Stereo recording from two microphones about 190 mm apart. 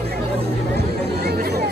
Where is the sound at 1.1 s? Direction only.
55° right (ahead or behind).